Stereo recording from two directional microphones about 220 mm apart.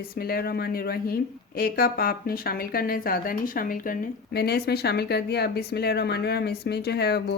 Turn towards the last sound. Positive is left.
turn(degrees=50)  # may be behind; listen again after turning